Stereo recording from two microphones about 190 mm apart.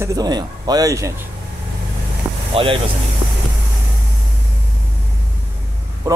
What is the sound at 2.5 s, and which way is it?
Speech, 30° right (ahead or behind).